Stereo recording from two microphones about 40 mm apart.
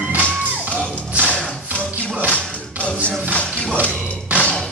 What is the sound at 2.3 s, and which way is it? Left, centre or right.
Music, left.